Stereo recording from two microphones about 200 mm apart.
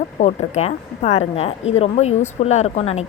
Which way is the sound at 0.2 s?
35° left (ahead or behind).